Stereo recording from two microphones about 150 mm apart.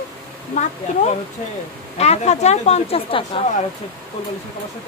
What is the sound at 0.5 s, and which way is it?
Speech, 45° left (ahead or behind).